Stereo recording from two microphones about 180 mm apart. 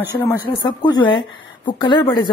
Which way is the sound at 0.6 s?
25° left (ahead or behind).